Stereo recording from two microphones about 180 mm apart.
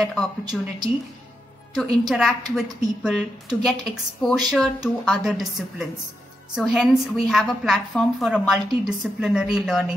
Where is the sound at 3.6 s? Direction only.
Centre (ahead or behind).